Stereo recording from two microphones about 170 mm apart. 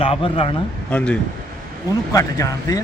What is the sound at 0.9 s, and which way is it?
Speech, 5° left (ahead or behind).